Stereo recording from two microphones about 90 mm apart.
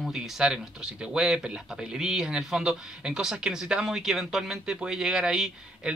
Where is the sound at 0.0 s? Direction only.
5° right (ahead or behind).